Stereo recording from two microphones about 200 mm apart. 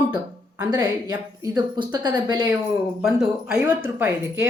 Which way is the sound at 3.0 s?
5° right (ahead or behind).